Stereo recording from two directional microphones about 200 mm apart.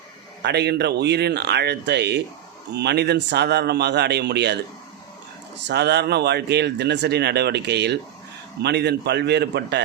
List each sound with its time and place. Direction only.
0.4 s speech: 55° right (ahead or behind)
5.6 s speech: 55° right (ahead or behind)